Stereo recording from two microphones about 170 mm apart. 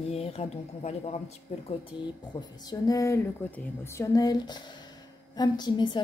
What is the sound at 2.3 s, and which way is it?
A woman's voice, 25° left (ahead or behind).